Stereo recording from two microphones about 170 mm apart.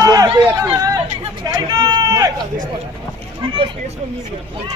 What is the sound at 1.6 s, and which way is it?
Vehicle, 25° right (ahead or behind).